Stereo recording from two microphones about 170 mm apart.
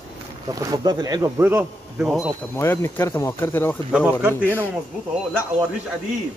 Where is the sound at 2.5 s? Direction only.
15° left (ahead or behind).